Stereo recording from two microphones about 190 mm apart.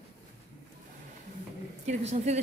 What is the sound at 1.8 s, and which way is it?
Speech, 35° right (ahead or behind).